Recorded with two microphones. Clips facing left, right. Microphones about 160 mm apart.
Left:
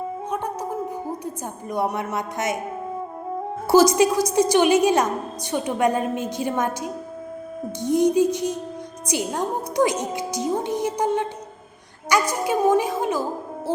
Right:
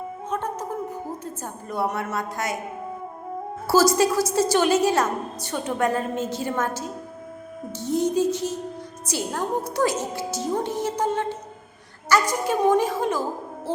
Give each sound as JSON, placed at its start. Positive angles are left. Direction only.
{"t": 0.3, "sound": "a sound", "side_deg": 10}
{"t": 1.7, "sound": "speech", "side_deg": 15}
{"t": 3.7, "sound": "a woman's voice", "side_deg": 20}